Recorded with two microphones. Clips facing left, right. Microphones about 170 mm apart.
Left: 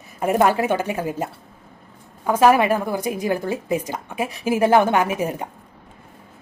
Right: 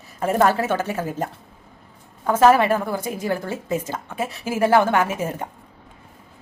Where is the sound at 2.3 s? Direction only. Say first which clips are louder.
Even; 15° left (ahead or behind).